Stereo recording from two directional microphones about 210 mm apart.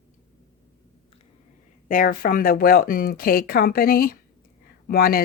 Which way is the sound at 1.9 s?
40° left (ahead or behind).